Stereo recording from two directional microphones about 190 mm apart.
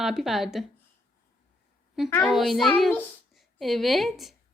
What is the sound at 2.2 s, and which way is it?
A woman's voice, centre (ahead or behind).